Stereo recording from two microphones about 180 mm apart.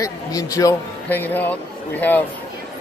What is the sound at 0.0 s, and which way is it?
A man's voice, 20° left (ahead or behind).